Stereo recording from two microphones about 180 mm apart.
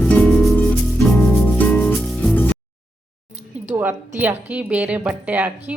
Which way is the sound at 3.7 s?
10° right (ahead or behind).